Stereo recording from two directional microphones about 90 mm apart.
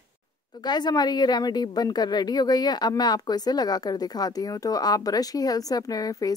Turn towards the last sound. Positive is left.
turn(degrees=45)  # may be behind; listen again after turning